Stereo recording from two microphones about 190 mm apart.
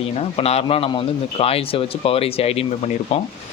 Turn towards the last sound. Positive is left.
turn(degrees=30)  # may be behind; listen again after turning